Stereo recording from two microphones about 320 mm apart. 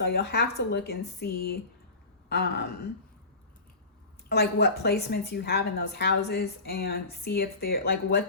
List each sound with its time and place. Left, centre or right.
0.0 s a woman's voice: left
4.3 s a woman's voice: left